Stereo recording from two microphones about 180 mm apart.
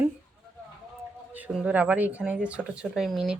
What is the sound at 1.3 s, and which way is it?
Speech, 10° right (ahead or behind).